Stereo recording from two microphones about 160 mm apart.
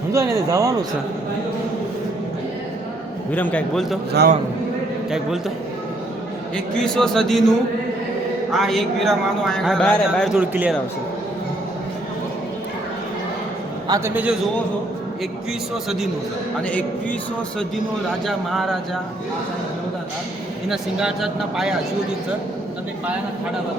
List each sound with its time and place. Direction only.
0.1 s speech: 20° right (ahead or behind)
3.3 s a man's voice: 10° left (ahead or behind)
4.2 s a man's voice: 90° right
6.7 s a man's voice: 5° left (ahead or behind)
8.5 s a man's voice: centre (ahead or behind)
10.4 s speech: 10° right (ahead or behind)
13.8 s a man's voice: 20° right (ahead or behind)
16.6 s a man's voice: 10° left (ahead or behind)
18.3 s a man's voice: centre (ahead or behind)
20.7 s a man's voice: 5° right (ahead or behind)